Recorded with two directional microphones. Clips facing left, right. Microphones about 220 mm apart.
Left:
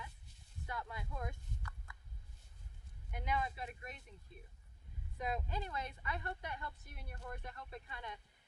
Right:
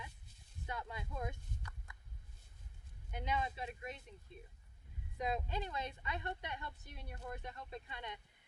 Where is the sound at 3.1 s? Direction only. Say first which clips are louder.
Even; 25° right (ahead or behind).